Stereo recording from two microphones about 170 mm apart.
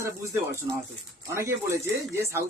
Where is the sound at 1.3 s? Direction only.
15° right (ahead or behind).